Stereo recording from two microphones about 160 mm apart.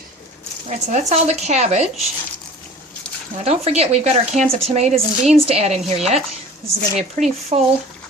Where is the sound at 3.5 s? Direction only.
40° right (ahead or behind).